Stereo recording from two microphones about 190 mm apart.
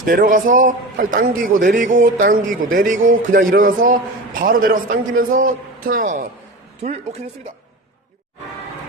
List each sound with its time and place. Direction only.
0.0 s a man's voice: 45° right (ahead or behind)